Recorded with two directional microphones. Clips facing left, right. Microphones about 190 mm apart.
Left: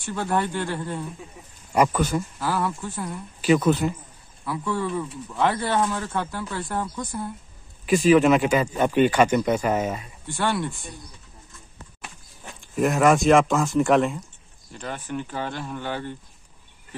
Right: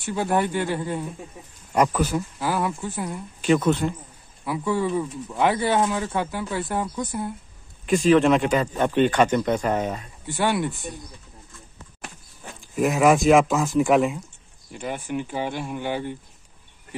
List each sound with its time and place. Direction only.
0.0 s speech: 15° right (ahead or behind)
2.4 s speech: 15° right (ahead or behind)
3.3 s speech: 5° left (ahead or behind)
4.5 s speech: 10° right (ahead or behind)
7.8 s speech: 5° left (ahead or behind)
10.3 s speech: 15° right (ahead or behind)
12.5 s speech: centre (ahead or behind)